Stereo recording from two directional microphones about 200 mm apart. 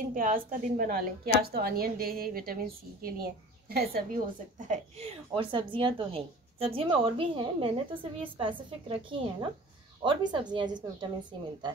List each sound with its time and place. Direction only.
0.1 s a woman's voice: 45° right (ahead or behind)
4.6 s a woman's voice: 35° right (ahead or behind)